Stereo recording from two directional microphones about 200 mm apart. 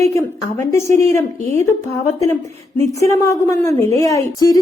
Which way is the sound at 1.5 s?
15° left (ahead or behind).